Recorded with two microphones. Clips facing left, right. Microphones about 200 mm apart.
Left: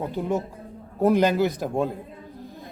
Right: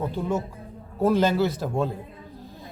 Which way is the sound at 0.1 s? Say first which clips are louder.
Left 1 dB; 15° left (ahead or behind).